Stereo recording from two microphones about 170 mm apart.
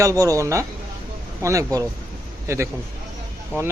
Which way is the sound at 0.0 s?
20° right (ahead or behind).